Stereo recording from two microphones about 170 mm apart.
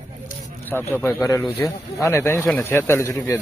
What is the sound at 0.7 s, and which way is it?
A man's voice, 10° left (ahead or behind).